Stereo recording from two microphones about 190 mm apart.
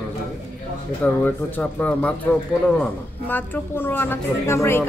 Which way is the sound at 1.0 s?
10° left (ahead or behind).